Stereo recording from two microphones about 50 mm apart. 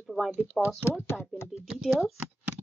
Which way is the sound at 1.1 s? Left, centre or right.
Centre.